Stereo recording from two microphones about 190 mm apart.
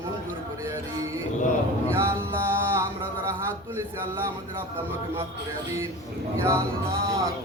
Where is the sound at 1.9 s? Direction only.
15° right (ahead or behind).